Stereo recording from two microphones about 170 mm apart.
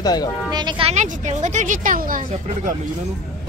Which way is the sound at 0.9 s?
45° right (ahead or behind).